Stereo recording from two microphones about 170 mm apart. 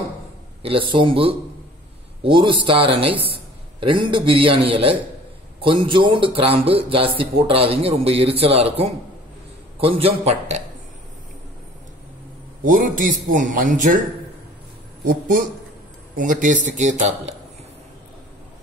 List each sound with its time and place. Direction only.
0.6 s speech: 30° right (ahead or behind)
12.6 s a man's voice: 50° right (ahead or behind)
16.2 s a man's voice: 50° right (ahead or behind)